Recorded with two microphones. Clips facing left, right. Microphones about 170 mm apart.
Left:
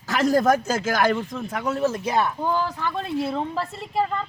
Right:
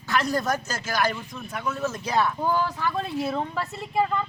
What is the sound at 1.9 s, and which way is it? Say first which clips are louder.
Speech: left 2 dB; 55° left (ahead or behind).